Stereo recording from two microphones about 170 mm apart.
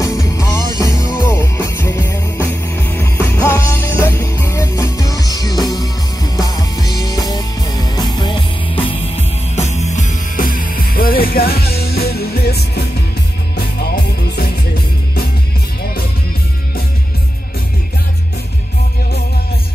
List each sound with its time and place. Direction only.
0.0 s music: 20° left (ahead or behind); by 14.5 s 65° left (ahead or behind)